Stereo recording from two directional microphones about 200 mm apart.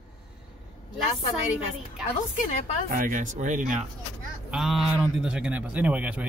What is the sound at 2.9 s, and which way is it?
Speech, 40° right (ahead or behind).